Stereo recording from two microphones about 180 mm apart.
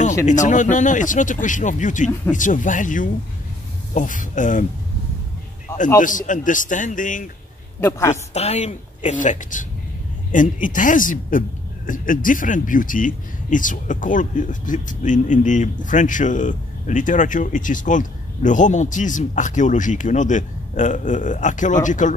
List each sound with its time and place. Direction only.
0.2 s speech: 45° left (ahead or behind)
5.9 s a man's voice: 45° left (ahead or behind)